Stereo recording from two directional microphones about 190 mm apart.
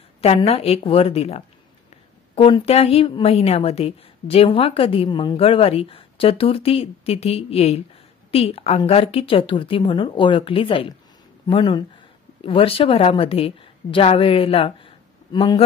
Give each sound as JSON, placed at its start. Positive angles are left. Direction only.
{"t": 0.2, "sound": "a woman's voice", "side_deg": 30}